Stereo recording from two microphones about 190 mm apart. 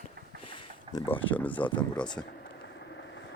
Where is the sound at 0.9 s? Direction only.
10° left (ahead or behind).